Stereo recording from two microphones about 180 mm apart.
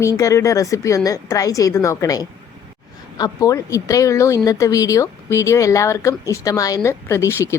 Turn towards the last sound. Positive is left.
turn(degrees=15)  # may be behind; listen again after turning